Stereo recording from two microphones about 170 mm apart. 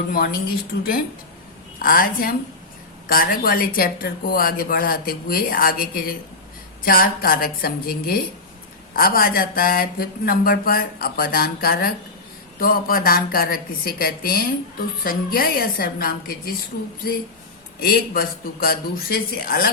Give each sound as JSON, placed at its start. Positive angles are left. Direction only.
{"t": 0.1, "sound": "speech", "side_deg": 60}
{"t": 1.8, "sound": "speech", "side_deg": 55}
{"t": 17.7, "sound": "speech", "side_deg": 60}